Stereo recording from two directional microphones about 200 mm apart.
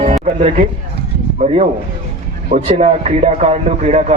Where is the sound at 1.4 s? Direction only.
35° right (ahead or behind).